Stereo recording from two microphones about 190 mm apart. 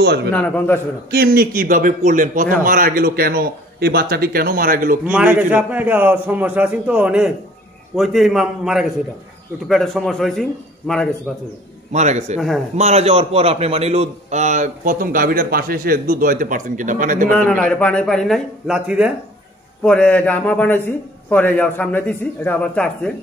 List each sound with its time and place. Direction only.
0.0 s a man's voice: 60° right (ahead or behind)
0.3 s a man's voice: 10° left (ahead or behind)
1.1 s a man's voice: 50° right (ahead or behind)
5.0 s a man's voice: 5° right (ahead or behind)
11.9 s a man's voice: 35° right (ahead or behind)
17.6 s speech: 5° left (ahead or behind)
19.8 s a man's voice: 5° left (ahead or behind)